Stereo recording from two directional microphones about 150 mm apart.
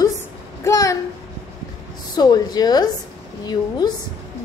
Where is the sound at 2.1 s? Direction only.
30° left (ahead or behind).